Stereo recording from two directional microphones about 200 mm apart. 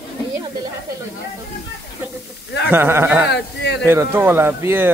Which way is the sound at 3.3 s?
55° left (ahead or behind).